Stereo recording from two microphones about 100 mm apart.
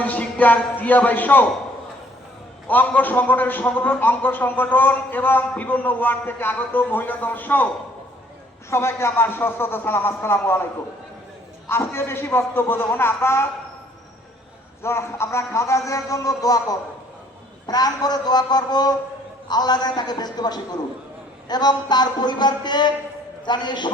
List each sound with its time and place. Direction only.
0.0 s a man's voice: 15° left (ahead or behind)
2.6 s a man's voice: 15° left (ahead or behind)
8.7 s a man's voice: 25° left (ahead or behind)
11.7 s a man's voice: 25° left (ahead or behind)
14.8 s a man's voice: 25° left (ahead or behind)
17.7 s a sound: 40° left (ahead or behind)